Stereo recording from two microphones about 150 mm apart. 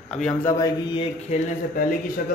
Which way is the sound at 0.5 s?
25° left (ahead or behind).